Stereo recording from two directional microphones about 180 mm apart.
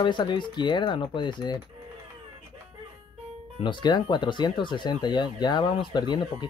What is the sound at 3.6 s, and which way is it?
Speech, 25° left (ahead or behind).